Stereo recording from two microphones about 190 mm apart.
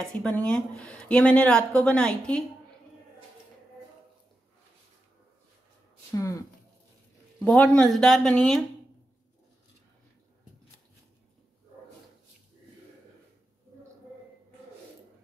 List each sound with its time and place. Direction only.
0.0 s speech: 5° left (ahead or behind)
6.1 s speech: 15° left (ahead or behind)
7.4 s speech: 10° left (ahead or behind)